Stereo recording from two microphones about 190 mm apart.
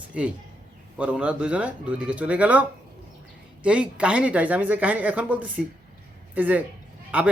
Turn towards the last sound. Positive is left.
turn(degrees=-10)  # may be behind; listen again after turning